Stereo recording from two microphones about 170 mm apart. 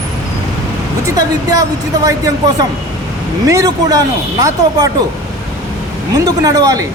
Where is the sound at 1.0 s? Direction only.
20° right (ahead or behind).